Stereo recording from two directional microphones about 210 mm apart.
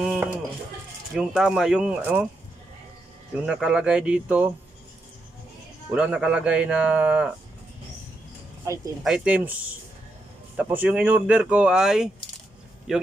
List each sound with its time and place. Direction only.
0.0 s a sound: 5° right (ahead or behind)
1.1 s speech: 5° right (ahead or behind)
3.3 s speech: 5° right (ahead or behind)
5.9 s speech: 5° right (ahead or behind)
8.6 s speech: 15° right (ahead or behind)
9.0 s speech: 5° right (ahead or behind)